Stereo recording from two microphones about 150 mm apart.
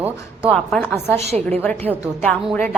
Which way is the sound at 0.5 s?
5° left (ahead or behind).